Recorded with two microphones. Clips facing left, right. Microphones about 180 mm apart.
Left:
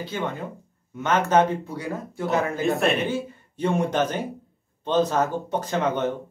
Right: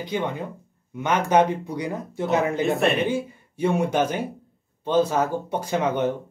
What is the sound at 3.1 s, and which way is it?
Speech, 10° right (ahead or behind).